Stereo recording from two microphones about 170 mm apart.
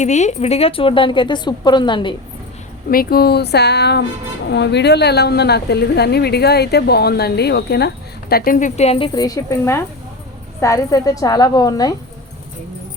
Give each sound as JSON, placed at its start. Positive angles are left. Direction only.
{"t": 0.0, "sound": "a woman's voice", "side_deg": 45}
{"t": 2.9, "sound": "a woman's voice", "side_deg": 60}
{"t": 8.3, "sound": "speech", "side_deg": 60}
{"t": 9.1, "sound": "a woman's voice", "side_deg": 20}